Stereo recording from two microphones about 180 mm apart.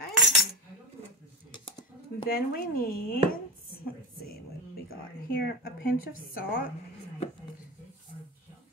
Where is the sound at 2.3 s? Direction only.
55° left (ahead or behind).